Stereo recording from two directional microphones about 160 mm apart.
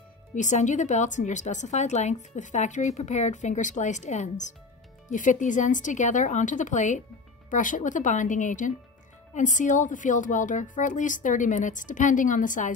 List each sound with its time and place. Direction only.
0.3 s speech: 50° left (ahead or behind)